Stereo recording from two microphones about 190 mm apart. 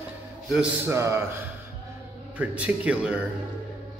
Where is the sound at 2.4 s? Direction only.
5° right (ahead or behind).